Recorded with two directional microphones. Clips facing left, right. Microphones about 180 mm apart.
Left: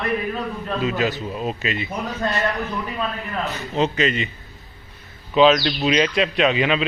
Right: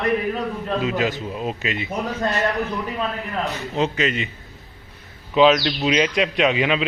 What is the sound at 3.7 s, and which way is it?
Speech, 10° right (ahead or behind).